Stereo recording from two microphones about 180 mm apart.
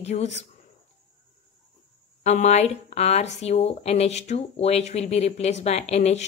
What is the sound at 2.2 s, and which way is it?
Speech, 40° left (ahead or behind).